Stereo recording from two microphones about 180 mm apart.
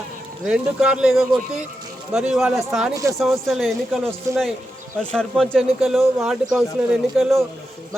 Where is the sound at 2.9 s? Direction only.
15° right (ahead or behind).